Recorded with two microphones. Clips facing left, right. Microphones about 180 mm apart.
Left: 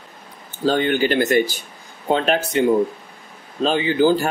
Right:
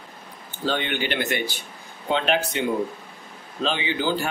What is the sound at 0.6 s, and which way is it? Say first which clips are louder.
Speech: left 8 dB; 40° left (ahead or behind).